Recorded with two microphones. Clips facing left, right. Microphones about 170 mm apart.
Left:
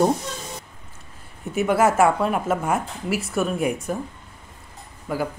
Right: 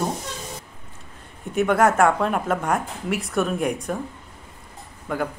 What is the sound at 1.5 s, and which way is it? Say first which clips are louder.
A woman's voice: even; 5° left (ahead or behind).